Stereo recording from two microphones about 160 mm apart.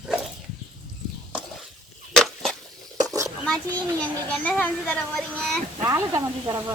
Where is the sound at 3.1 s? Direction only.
20° right (ahead or behind).